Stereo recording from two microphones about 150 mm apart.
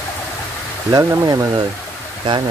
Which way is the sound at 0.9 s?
25° right (ahead or behind).